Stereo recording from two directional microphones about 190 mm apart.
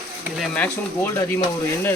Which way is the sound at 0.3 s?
10° left (ahead or behind).